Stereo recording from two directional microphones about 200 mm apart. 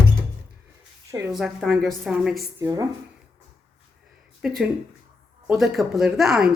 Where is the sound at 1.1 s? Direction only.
15° right (ahead or behind).